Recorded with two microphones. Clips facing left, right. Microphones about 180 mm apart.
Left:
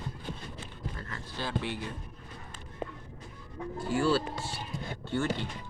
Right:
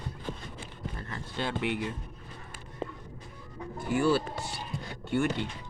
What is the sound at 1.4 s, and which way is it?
Speech, 20° right (ahead or behind).